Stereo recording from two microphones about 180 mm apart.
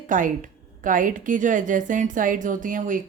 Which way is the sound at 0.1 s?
45° right (ahead or behind).